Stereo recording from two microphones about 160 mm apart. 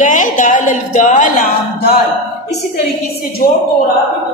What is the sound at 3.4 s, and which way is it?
Speech, 60° left (ahead or behind).